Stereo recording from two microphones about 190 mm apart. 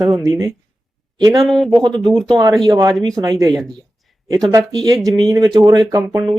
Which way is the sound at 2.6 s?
20° right (ahead or behind).